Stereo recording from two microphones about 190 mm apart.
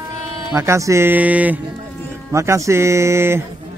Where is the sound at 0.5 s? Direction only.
15° right (ahead or behind).